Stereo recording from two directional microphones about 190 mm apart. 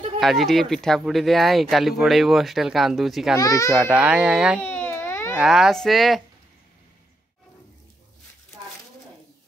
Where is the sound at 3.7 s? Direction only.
5° right (ahead or behind).